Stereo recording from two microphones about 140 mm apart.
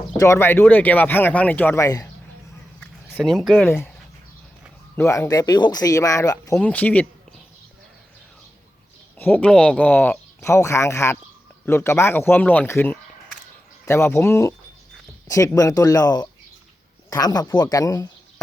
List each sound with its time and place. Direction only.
0.2 s speech: 20° left (ahead or behind)
2.8 s speech: 10° left (ahead or behind)
4.9 s speech: 20° left (ahead or behind)
6.6 s speech: 10° left (ahead or behind)
9.1 s speech: 15° left (ahead or behind)